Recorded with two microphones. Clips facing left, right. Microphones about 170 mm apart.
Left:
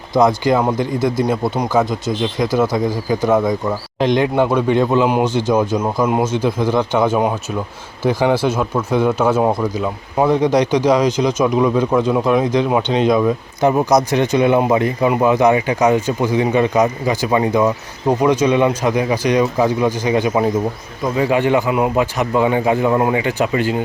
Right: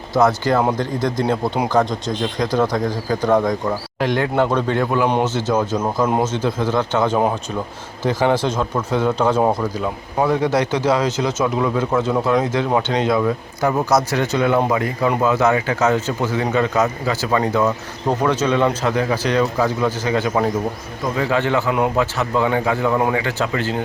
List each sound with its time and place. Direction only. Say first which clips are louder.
0.1 s speech: left 2 dB; 15° left (ahead or behind)
4.0 s speech: left 3 dB; 20° left (ahead or behind)
5.0 s speech: left 3 dB; 10° left (ahead or behind)